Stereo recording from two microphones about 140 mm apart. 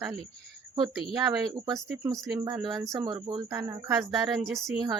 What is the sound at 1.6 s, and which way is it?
Speech, 25° right (ahead or behind).